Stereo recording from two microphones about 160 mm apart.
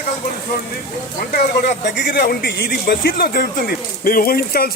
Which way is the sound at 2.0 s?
90° left.